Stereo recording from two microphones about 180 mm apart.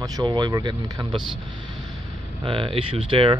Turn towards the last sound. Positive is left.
turn(degrees=-30)  # may be behind; listen again after turning